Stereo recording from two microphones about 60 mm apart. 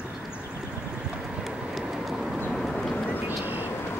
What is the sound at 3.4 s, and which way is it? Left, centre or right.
Vehicle, right.